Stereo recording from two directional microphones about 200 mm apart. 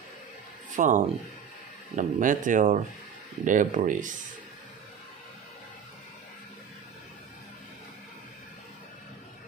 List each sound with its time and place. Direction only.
0.7 s speech: 40° right (ahead or behind)